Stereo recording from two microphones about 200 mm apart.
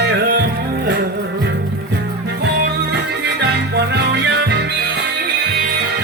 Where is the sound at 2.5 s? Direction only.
55° right (ahead or behind).